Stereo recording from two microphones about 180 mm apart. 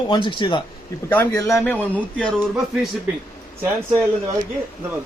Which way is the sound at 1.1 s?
10° left (ahead or behind).